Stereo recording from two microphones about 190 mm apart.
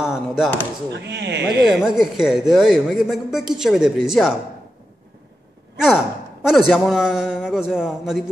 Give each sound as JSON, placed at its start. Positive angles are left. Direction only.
{"t": 0.0, "sound": "speech", "side_deg": -5}
{"t": 0.9, "sound": "speech", "side_deg": -65}
{"t": 1.7, "sound": "speech", "side_deg": 0}
{"t": 5.8, "sound": "speech", "side_deg": 0}